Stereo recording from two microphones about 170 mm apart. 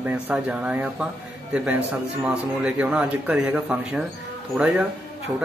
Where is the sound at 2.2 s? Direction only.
5° right (ahead or behind).